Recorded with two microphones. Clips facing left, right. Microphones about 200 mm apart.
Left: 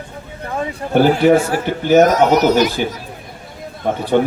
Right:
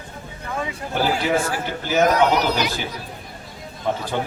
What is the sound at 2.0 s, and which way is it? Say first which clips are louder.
Speech: left 3 dB; 40° left (ahead or behind).